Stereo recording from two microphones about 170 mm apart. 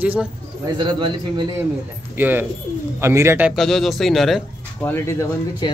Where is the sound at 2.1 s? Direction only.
10° right (ahead or behind).